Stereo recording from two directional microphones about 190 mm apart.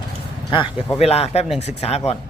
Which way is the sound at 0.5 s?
25° left (ahead or behind).